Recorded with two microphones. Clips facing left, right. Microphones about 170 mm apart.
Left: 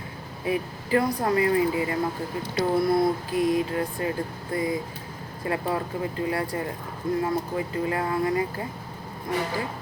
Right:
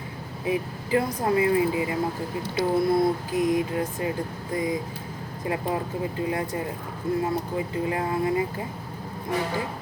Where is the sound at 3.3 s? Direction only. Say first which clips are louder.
Left 1 dB; 20° right (ahead or behind).